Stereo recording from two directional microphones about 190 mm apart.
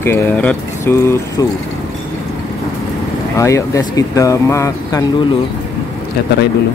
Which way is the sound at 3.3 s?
15° left (ahead or behind).